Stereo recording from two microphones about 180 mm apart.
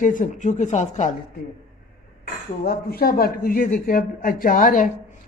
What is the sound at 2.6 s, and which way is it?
Speech, 60° left (ahead or behind).